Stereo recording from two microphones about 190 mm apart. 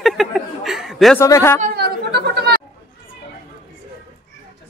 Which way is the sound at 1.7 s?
60° right (ahead or behind).